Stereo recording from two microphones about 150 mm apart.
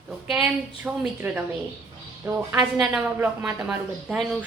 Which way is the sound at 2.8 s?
5° right (ahead or behind).